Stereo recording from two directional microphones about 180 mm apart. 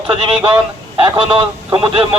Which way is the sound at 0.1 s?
30° right (ahead or behind).